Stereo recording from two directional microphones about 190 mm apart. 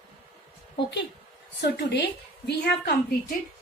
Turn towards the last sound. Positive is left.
turn(degrees=55)  # may be behind; listen again after turning